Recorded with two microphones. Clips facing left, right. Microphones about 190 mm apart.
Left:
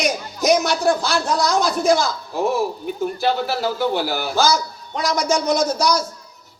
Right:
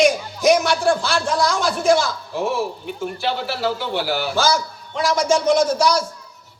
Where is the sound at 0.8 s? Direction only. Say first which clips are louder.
Even; 40° left (ahead or behind).